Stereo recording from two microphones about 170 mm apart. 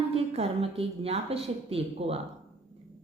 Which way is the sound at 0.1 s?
35° right (ahead or behind).